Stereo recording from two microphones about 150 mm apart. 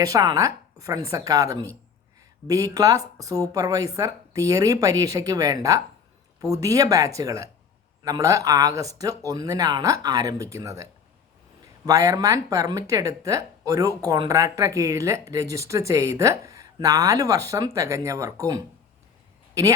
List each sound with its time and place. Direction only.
0.0 s speech: 25° right (ahead or behind)
11.9 s speech: 20° right (ahead or behind)